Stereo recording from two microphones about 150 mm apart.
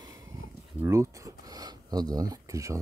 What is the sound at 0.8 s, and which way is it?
Speech, 20° right (ahead or behind).